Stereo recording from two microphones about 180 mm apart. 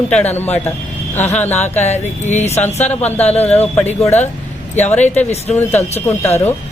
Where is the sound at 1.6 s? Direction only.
40° left (ahead or behind).